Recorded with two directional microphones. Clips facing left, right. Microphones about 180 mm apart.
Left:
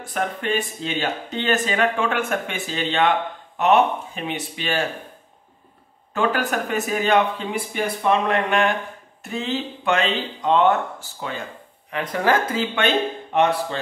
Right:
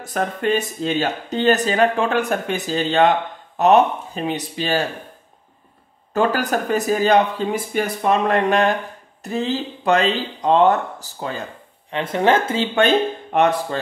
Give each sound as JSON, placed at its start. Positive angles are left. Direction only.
{"t": 0.0, "sound": "speech", "side_deg": -40}
{"t": 6.1, "sound": "speech", "side_deg": -40}
{"t": 11.9, "sound": "speech", "side_deg": -25}
{"t": 12.7, "sound": "speech", "side_deg": -40}